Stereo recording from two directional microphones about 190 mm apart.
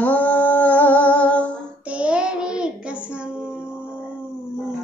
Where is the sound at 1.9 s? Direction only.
5° right (ahead or behind).